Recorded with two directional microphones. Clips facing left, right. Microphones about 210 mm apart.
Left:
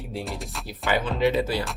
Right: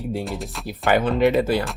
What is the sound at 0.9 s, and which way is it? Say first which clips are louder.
Speech: right 5 dB; 55° right (ahead or behind).